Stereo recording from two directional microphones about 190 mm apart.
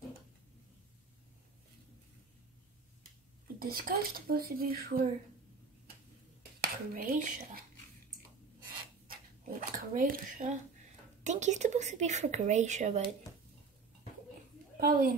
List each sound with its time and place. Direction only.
3.5 s speech: 50° right (ahead or behind)
6.6 s speech: 50° right (ahead or behind)
9.0 s a sound: 50° right (ahead or behind)
11.2 s speech: 40° right (ahead or behind)
14.8 s a woman's voice: 50° right (ahead or behind)